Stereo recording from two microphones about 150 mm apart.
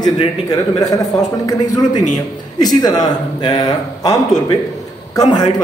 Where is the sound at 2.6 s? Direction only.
25° left (ahead or behind).